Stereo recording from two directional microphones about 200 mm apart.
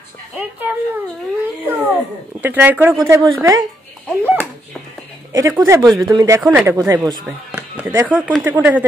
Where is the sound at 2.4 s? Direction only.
10° right (ahead or behind).